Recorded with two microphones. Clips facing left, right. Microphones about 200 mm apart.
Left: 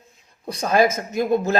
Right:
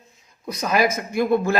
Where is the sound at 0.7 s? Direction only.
50° left (ahead or behind).